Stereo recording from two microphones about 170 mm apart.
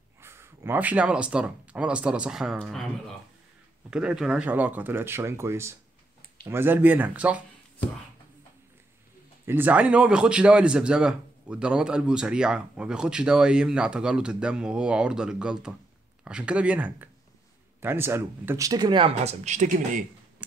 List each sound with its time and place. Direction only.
0.2 s speech: 15° right (ahead or behind)
9.5 s a man's voice: 10° right (ahead or behind); by 20.1 s 50° right (ahead or behind)